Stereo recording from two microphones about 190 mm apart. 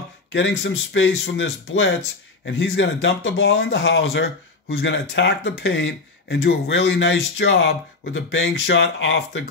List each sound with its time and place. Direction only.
0.3 s speech: 75° left (ahead or behind)